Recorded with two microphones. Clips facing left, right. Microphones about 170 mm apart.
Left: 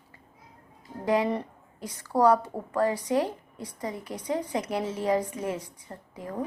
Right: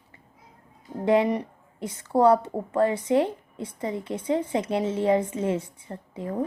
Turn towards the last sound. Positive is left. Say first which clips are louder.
# right 5 dB
turn(degrees=-25)  # may be behind; listen again after turning